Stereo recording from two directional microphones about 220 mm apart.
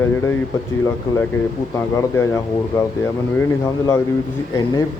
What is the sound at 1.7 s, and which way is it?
Speech, 15° left (ahead or behind).